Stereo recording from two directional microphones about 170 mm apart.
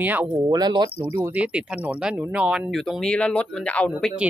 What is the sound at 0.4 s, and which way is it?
Speech, 25° right (ahead or behind).